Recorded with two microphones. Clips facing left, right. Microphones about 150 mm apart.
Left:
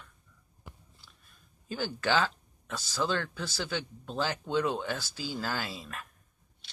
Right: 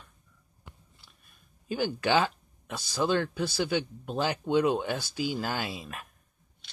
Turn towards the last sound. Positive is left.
turn(degrees=-15)  # may be behind; listen again after turning